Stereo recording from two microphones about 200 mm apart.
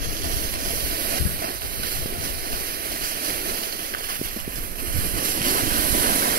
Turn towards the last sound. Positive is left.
turn(degrees=-45)  # may be behind; listen again after turning